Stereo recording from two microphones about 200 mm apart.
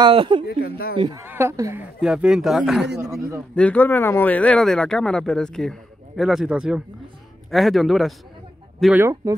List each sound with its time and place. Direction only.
0.0 s speech: 25° right (ahead or behind)
0.5 s speech: 50° left (ahead or behind)
0.9 s speech: 25° right (ahead or behind)
1.2 s speech: 10° right (ahead or behind)